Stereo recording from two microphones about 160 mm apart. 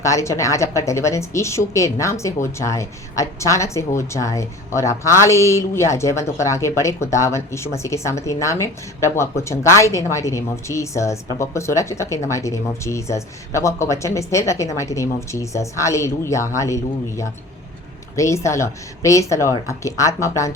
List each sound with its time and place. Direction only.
0.0 s a woman's voice: 20° left (ahead or behind)